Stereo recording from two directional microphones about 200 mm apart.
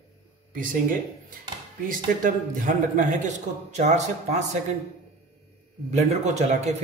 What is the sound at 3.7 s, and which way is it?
Speech, 35° right (ahead or behind).